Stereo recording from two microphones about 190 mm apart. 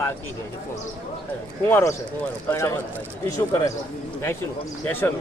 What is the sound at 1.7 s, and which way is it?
A man's voice, 10° left (ahead or behind).